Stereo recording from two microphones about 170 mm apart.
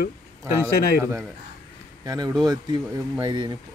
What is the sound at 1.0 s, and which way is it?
Speech, 15° right (ahead or behind).